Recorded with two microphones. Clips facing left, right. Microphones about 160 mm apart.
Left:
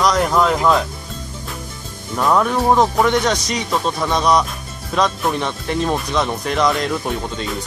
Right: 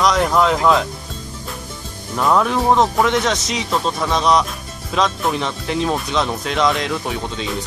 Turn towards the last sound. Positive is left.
turn(degrees=0)  # may be behind; listen again after turning